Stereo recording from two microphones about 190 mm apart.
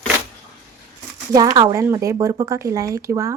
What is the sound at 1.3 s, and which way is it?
Speech, 20° right (ahead or behind).